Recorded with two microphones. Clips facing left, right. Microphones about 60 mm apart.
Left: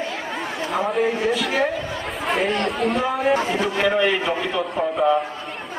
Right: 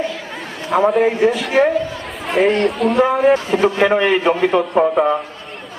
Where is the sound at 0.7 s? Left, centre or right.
Right.